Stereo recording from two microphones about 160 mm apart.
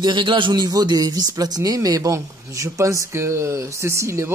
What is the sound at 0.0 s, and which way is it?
A man's voice, 30° right (ahead or behind).